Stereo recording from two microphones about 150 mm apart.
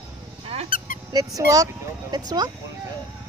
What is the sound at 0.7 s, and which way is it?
Squeak, 65° left (ahead or behind).